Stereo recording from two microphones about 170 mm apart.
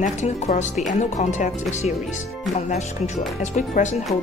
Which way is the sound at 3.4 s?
45° left (ahead or behind).